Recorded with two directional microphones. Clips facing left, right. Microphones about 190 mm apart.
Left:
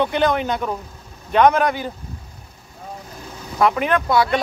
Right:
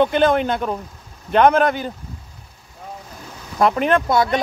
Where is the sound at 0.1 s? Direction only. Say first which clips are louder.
Right 3 dB; 50° right (ahead or behind).